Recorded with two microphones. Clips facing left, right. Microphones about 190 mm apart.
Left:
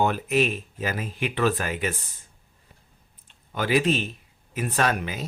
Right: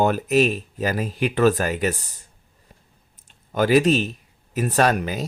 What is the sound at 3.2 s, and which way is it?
Speech, 45° right (ahead or behind).